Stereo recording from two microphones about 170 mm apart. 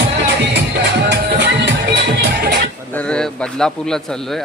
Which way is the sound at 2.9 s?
5° left (ahead or behind).